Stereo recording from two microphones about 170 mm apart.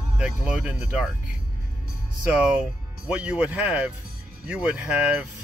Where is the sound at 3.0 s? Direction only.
10° right (ahead or behind).